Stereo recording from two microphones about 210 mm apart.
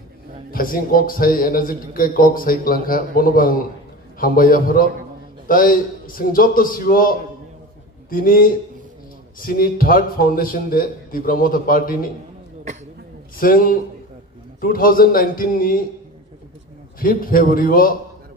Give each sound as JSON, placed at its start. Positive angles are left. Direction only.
{"t": 0.5, "sound": "a man's voice", "side_deg": 45}
{"t": 13.4, "sound": "a man's voice", "side_deg": 45}
{"t": 17.0, "sound": "a man's voice", "side_deg": 45}